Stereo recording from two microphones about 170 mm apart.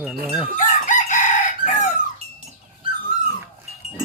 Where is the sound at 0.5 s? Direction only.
45° left (ahead or behind).